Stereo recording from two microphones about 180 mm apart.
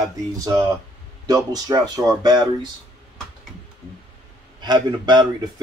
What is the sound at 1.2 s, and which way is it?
Speech, 20° right (ahead or behind).